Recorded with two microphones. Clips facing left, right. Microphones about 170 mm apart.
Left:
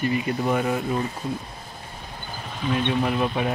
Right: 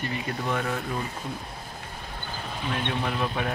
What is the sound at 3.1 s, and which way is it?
Speech, 10° left (ahead or behind).